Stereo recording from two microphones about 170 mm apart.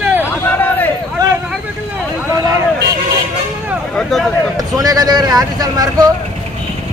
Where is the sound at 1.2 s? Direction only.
25° right (ahead or behind).